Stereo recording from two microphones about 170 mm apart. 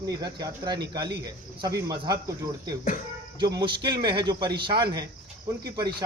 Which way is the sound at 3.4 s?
25° right (ahead or behind).